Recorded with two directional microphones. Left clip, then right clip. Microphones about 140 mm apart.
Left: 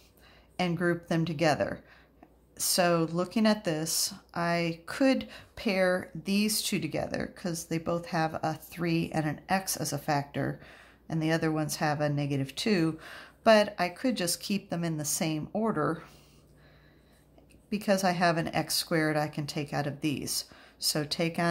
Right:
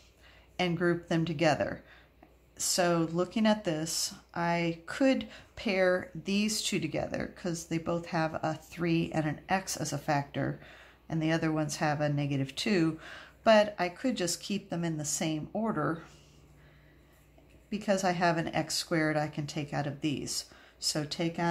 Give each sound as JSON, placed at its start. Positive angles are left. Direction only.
{"t": 0.6, "sound": "a woman's voice", "side_deg": 15}
{"t": 17.6, "sound": "a woman's voice", "side_deg": 25}